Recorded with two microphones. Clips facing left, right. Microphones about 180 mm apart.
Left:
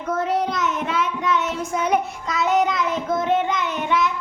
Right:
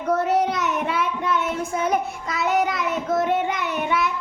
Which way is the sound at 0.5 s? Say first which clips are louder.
Even; 60° right (ahead or behind).